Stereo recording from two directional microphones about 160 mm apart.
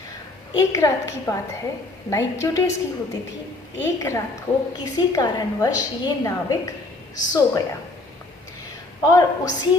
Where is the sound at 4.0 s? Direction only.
15° left (ahead or behind).